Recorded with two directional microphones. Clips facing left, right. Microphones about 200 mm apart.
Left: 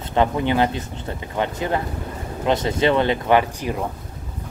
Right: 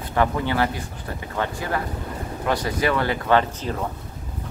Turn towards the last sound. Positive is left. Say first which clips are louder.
# left 2 dB
turn(degrees=15)  # may be behind; listen again after turning